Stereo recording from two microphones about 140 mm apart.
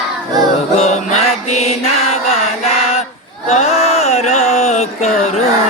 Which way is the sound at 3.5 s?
50° left (ahead or behind).